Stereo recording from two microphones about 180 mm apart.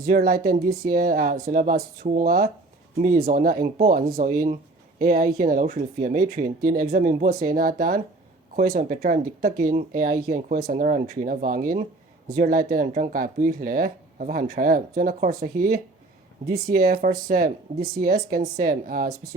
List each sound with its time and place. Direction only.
0.0 s speech: 55° right (ahead or behind)